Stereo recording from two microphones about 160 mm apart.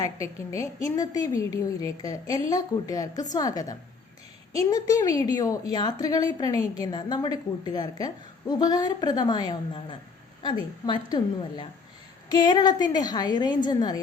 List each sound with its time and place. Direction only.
0.0 s a woman's voice: 20° left (ahead or behind)